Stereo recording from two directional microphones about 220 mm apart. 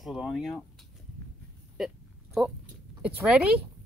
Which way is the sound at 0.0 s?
Centre (ahead or behind).